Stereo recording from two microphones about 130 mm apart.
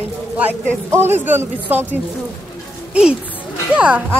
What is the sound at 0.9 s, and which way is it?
Speech, 20° right (ahead or behind).